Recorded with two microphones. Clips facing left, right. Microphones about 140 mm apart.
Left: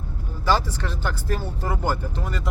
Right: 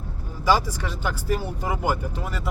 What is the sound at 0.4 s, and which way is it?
Speech, 10° right (ahead or behind).